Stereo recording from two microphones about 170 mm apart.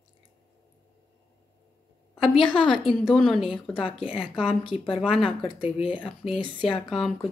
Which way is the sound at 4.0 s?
30° left (ahead or behind).